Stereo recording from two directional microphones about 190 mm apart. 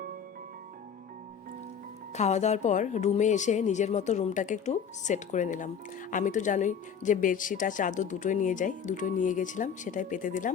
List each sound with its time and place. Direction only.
2.1 s speech: 35° left (ahead or behind)